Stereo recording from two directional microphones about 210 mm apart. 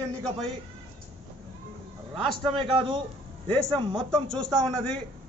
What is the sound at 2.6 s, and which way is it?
Speech, 20° right (ahead or behind).